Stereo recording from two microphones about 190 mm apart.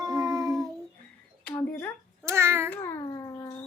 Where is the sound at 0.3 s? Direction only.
20° right (ahead or behind).